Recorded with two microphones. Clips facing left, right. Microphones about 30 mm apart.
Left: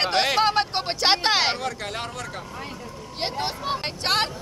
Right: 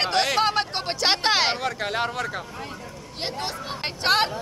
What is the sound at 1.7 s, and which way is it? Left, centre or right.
Speech, centre.